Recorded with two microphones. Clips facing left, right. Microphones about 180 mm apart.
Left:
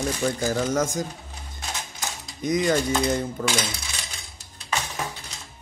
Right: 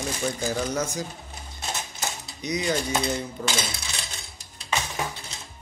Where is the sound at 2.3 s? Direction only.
50° left (ahead or behind).